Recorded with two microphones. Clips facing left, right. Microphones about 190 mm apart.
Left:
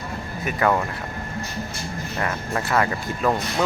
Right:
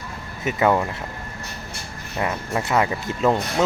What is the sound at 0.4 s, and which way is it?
Speech, 15° right (ahead or behind).